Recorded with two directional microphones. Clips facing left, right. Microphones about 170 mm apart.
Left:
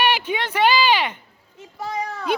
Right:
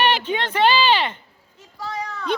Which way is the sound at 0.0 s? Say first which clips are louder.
Right 1 dB; 10° left (ahead or behind).